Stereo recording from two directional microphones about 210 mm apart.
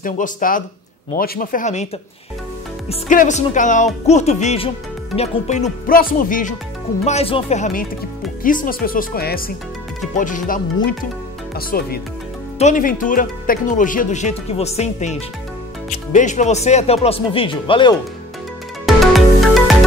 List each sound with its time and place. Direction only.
0.0 s speech: 40° left (ahead or behind)
2.9 s speech: 35° left (ahead or behind)
7.1 s speech: 30° left (ahead or behind)
18.9 s music: centre (ahead or behind)